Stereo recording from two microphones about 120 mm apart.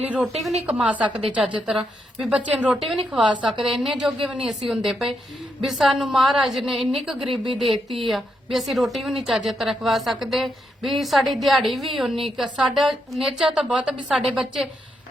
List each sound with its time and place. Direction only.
0.0 s a woman's voice: 10° right (ahead or behind)